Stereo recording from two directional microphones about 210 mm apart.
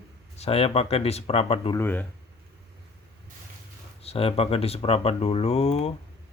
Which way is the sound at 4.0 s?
30° left (ahead or behind).